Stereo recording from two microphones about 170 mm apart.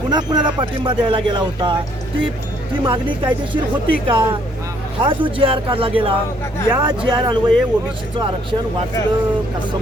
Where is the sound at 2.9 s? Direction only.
30° right (ahead or behind).